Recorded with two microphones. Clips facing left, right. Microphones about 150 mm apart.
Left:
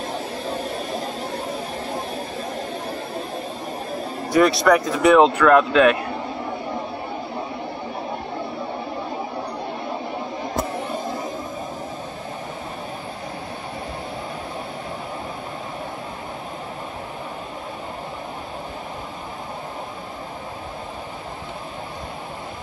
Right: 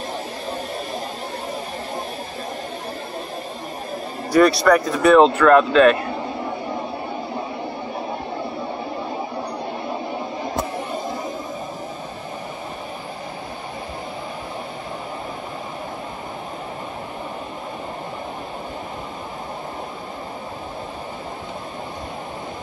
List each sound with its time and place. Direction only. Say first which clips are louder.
4.3 s speech: right 2 dB; 20° left (ahead or behind)